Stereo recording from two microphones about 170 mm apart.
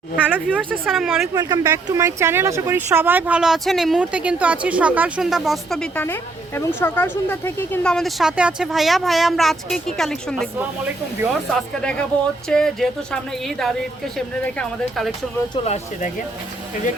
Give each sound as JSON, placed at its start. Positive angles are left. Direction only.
{"t": 0.2, "sound": "speech", "side_deg": -10}
{"t": 1.3, "sound": "speech", "side_deg": -20}
{"t": 10.6, "sound": "speech", "side_deg": -10}
{"t": 11.8, "sound": "speech", "side_deg": 5}
{"t": 15.6, "sound": "speech", "side_deg": 40}